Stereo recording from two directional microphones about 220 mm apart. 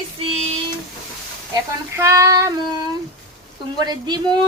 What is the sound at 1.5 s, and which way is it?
A woman's voice, 15° right (ahead or behind).